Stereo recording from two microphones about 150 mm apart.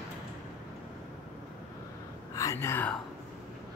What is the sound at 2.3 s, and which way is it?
Whispering, 20° left (ahead or behind).